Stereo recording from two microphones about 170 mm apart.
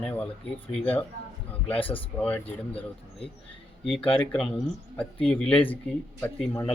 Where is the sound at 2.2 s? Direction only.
10° left (ahead or behind).